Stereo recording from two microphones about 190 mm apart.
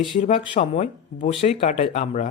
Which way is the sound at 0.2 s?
40° left (ahead or behind).